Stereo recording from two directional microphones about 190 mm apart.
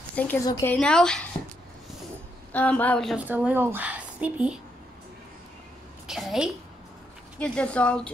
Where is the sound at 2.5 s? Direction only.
10° left (ahead or behind).